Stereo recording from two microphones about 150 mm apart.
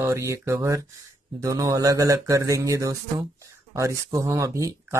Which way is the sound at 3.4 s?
20° right (ahead or behind).